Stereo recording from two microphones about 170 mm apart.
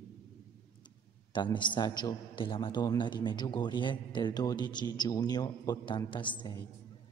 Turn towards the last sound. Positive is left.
turn(degrees=30)  # may be behind; listen again after turning